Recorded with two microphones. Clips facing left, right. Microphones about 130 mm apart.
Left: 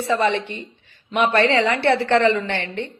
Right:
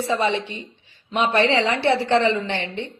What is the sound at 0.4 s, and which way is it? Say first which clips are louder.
A woman's voice: left 2 dB; 55° left (ahead or behind).